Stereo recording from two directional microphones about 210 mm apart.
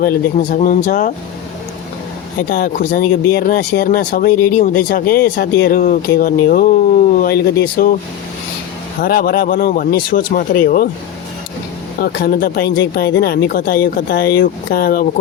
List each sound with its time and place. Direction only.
0.0 s speech: 40° left (ahead or behind)
2.5 s speech: 45° left (ahead or behind)
9.0 s speech: 45° left (ahead or behind)
11.9 s speech: 50° left (ahead or behind)